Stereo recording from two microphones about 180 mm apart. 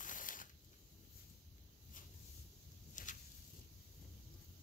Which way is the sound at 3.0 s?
45° left (ahead or behind).